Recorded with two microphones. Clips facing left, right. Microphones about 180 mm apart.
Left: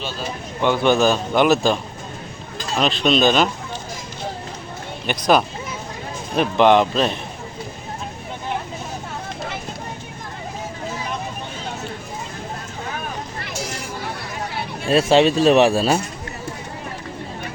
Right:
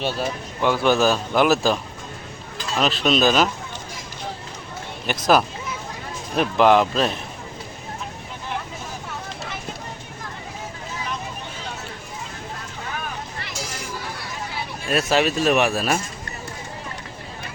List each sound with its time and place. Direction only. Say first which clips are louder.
0.6 s a man's voice: left 2 dB; 5° right (ahead or behind)
5.0 s a man's voice: left 1 dB; centre (ahead or behind)
14.8 s speech: left 6 dB; 30° left (ahead or behind)